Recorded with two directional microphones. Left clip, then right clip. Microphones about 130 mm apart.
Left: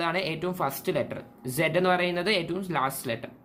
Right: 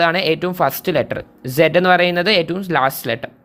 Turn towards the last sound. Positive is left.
turn(degrees=-55)  # may be behind; listen again after turning